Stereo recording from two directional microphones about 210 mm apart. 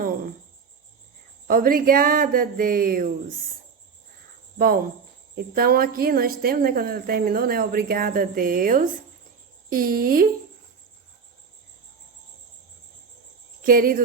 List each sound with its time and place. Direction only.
1.5 s a woman's voice: 40° right (ahead or behind)
4.5 s a woman's voice: 45° right (ahead or behind)
13.6 s speech: 45° right (ahead or behind)